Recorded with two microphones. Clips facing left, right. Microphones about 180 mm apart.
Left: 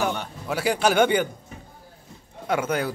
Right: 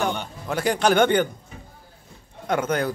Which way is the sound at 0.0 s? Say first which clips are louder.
Even; 5° left (ahead or behind).